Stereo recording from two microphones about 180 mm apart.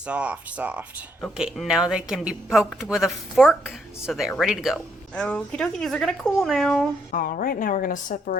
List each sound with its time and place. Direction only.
0.0 s speech: 5° right (ahead or behind)
7.1 s a woman's voice: 50° left (ahead or behind)